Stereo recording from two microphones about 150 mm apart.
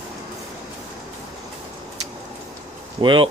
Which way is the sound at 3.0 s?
35° right (ahead or behind).